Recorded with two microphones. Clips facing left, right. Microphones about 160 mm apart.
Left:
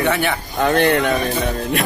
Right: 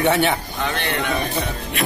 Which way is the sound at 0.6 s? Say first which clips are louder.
Left 11 dB; 50° left (ahead or behind).